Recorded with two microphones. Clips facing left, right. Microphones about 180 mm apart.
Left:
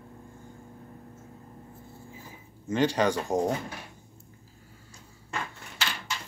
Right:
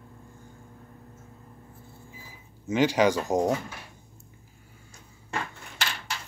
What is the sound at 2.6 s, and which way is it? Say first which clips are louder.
Speech: right 3 dB; 10° right (ahead or behind).